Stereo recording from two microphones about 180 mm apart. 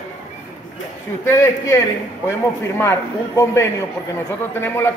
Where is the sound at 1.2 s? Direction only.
15° left (ahead or behind).